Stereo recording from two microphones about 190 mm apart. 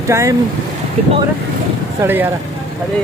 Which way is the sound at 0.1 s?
15° right (ahead or behind).